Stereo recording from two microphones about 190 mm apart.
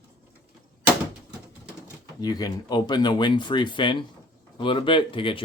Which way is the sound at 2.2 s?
20° left (ahead or behind).